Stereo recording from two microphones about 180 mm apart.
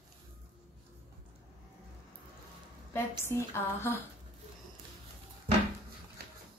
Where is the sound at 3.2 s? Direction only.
15° left (ahead or behind).